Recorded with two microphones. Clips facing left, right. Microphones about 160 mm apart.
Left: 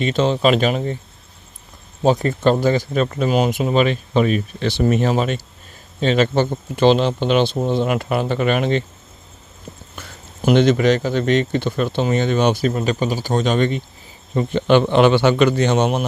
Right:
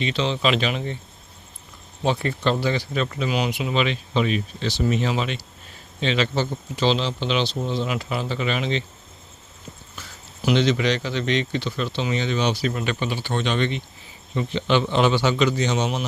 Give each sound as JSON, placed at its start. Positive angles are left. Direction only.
{"t": 0.0, "sound": "speech", "side_deg": 45}
{"t": 2.0, "sound": "speech", "side_deg": 45}
{"t": 9.9, "sound": "a man's voice", "side_deg": 55}